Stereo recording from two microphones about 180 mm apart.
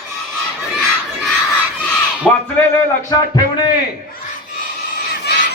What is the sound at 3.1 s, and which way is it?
Speech, 20° left (ahead or behind).